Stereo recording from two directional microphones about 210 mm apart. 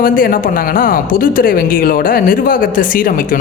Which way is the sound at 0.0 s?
40° left (ahead or behind).